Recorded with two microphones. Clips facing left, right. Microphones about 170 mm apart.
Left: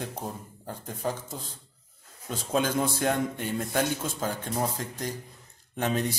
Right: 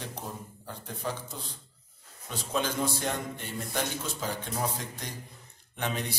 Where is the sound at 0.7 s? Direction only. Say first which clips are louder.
Left 4 dB; 45° left (ahead or behind).